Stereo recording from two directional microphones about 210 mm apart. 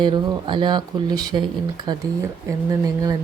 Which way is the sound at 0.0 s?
20° right (ahead or behind).